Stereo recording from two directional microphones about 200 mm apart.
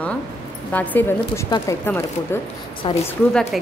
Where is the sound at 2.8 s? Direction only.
25° left (ahead or behind).